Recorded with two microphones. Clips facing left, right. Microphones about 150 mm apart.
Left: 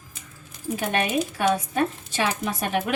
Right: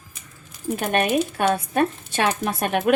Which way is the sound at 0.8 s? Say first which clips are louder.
Right 3 dB; 55° right (ahead or behind).